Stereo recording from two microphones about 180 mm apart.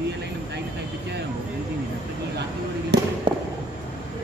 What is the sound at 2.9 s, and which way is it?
Fireworks, 70° right (ahead or behind).